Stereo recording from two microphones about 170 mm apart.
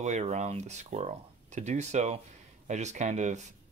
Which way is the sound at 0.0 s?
45° right (ahead or behind).